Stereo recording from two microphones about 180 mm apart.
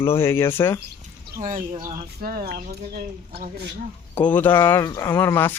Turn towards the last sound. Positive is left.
turn(degrees=10)  # may be behind; listen again after turning